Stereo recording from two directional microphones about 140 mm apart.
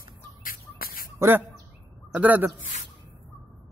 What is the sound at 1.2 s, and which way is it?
A man's voice, 15° right (ahead or behind).